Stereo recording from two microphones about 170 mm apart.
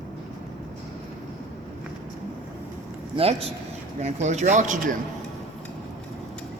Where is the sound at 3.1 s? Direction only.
35° right (ahead or behind).